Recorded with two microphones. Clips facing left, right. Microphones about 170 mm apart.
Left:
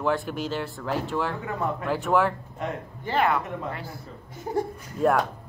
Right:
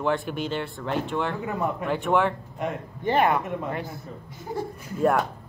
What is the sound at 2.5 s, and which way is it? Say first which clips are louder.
A man's voice: right 2 dB; 20° right (ahead or behind).